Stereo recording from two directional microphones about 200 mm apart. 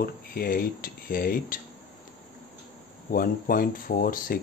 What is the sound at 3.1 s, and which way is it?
Speech, 45° left (ahead or behind).